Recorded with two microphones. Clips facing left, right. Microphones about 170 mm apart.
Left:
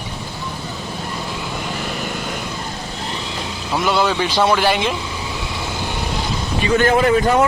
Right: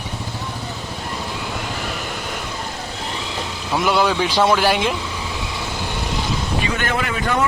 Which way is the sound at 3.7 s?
Centre (ahead or behind).